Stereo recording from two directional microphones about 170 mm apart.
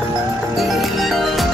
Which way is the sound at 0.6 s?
Centre (ahead or behind).